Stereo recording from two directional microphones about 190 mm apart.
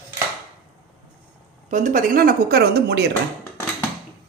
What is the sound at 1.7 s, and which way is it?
Speech, 40° right (ahead or behind).